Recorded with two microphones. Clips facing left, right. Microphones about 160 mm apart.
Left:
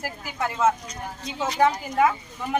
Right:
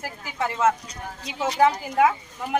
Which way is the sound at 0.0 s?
Centre (ahead or behind).